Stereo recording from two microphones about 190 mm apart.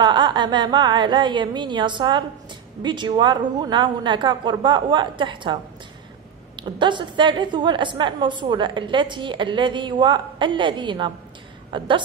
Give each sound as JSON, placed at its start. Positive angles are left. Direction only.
{"t": 0.0, "sound": "a woman's voice", "side_deg": -25}
{"t": 6.6, "sound": "a woman's voice", "side_deg": -25}